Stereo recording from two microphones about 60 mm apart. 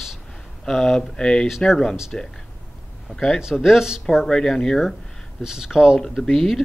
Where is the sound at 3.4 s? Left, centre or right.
Centre.